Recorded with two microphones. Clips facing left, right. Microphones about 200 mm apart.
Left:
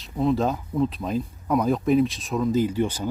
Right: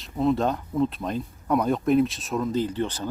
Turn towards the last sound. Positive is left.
turn(degrees=10)  # may be behind; listen again after turning